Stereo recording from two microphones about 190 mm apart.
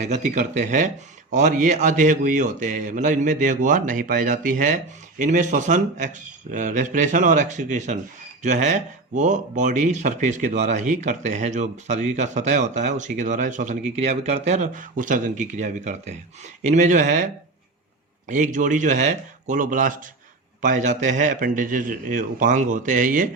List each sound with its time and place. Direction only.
0.0 s speech: 40° right (ahead or behind)
18.3 s a man's voice: 40° right (ahead or behind)